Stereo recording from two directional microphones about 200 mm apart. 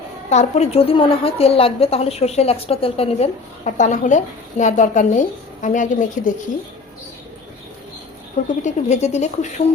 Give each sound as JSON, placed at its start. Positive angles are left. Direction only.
{"t": 0.3, "sound": "a woman's voice", "side_deg": 35}
{"t": 8.6, "sound": "a woman's voice", "side_deg": 35}